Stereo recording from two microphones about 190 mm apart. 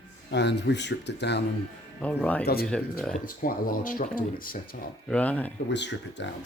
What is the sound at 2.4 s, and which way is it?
Speech, 55° left (ahead or behind).